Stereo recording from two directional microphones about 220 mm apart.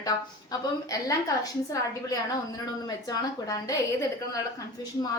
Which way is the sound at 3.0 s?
15° left (ahead or behind).